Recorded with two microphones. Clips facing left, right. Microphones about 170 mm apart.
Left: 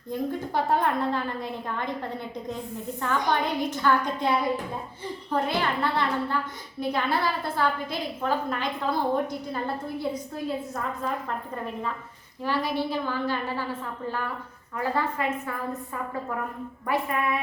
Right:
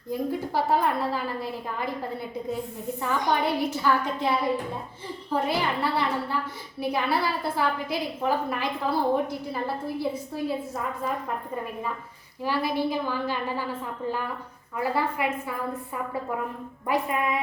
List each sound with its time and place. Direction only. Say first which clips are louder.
0.1 s a woman's voice: right 1 dB; 5° right (ahead or behind)
12.4 s a woman's voice: right 1 dB; 10° right (ahead or behind)
14.8 s a woman's voice: right 1 dB; 10° right (ahead or behind)
16.8 s a woman's voice: right 1 dB; 20° right (ahead or behind)